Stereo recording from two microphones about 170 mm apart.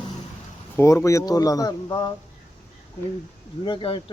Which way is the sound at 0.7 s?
15° left (ahead or behind).